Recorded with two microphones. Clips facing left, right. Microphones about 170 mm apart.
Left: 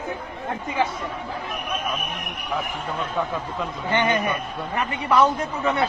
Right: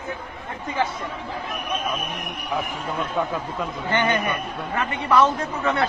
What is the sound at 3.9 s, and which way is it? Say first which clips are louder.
A man's voice: left 1 dB; 20° left (ahead or behind).